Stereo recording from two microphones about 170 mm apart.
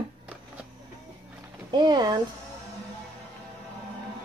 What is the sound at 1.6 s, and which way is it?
Speech, 25° right (ahead or behind).